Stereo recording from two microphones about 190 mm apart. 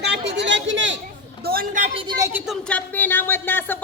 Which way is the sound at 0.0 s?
65° right (ahead or behind).